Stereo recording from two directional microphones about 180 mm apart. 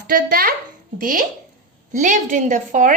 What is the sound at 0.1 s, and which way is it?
A child's voice, 55° right (ahead or behind).